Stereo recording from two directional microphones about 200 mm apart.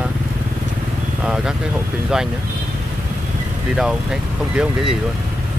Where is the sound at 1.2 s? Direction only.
5° right (ahead or behind).